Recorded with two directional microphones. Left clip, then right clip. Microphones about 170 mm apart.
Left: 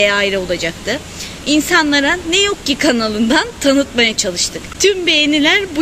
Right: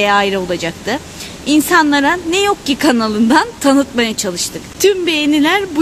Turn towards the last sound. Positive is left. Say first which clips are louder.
# left 1 dB
turn(degrees=-45)  # may be behind; listen again after turning